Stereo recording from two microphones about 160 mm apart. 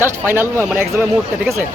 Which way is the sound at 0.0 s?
15° right (ahead or behind).